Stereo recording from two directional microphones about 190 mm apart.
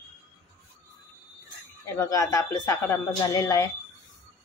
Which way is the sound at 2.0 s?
15° left (ahead or behind).